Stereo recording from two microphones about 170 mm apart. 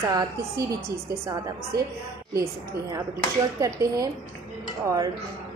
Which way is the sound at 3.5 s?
20° right (ahead or behind).